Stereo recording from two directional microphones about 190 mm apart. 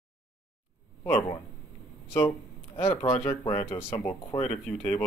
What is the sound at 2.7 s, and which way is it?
Speech, 30° left (ahead or behind).